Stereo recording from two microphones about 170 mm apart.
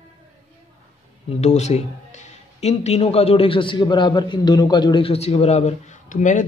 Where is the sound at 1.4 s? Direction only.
40° left (ahead or behind).